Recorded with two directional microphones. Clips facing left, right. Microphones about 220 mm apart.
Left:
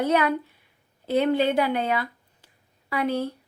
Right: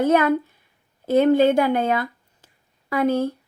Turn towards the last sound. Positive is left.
turn(degrees=-45)  # may be behind; listen again after turning